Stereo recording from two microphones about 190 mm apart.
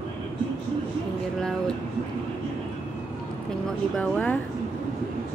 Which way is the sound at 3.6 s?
5° left (ahead or behind).